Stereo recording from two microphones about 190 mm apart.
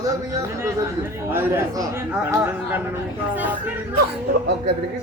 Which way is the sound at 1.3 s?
10° right (ahead or behind).